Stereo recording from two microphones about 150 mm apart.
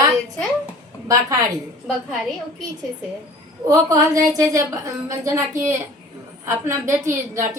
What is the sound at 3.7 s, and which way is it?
A woman's voice, 20° right (ahead or behind).